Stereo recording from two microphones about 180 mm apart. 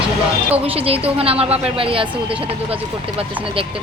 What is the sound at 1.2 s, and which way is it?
Speech, 30° right (ahead or behind).